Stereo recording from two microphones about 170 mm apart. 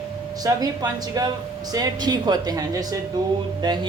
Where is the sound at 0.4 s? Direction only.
20° right (ahead or behind).